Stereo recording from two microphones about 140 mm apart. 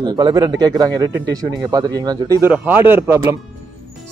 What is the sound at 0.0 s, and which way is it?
A man's voice, 30° right (ahead or behind).